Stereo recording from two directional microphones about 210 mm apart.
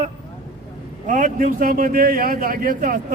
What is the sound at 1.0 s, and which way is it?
A man's voice, 40° right (ahead or behind).